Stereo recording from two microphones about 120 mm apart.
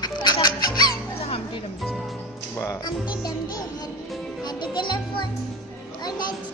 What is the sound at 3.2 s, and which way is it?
Music, 35° left (ahead or behind).